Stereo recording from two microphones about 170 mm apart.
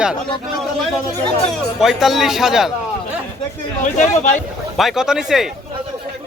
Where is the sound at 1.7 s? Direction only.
Centre (ahead or behind).